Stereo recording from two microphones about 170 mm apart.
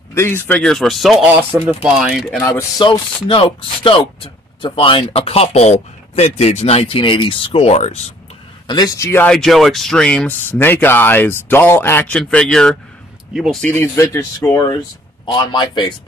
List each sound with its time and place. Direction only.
0.1 s speech: 15° left (ahead or behind)
0.5 s speech: 5° left (ahead or behind)
2.8 s speech: 30° left (ahead or behind)
8.6 s speech: 20° left (ahead or behind)